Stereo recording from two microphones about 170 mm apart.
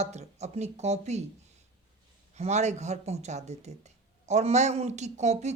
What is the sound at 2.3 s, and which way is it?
Speech, 40° right (ahead or behind).